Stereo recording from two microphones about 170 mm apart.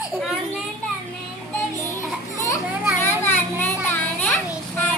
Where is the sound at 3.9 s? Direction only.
10° left (ahead or behind).